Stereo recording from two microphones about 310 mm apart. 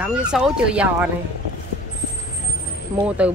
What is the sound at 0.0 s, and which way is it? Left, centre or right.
Speech, centre.